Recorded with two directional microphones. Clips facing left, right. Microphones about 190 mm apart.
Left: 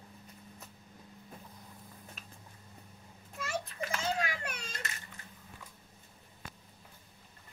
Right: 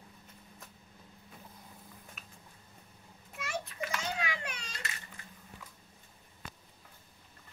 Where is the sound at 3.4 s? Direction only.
35° left (ahead or behind).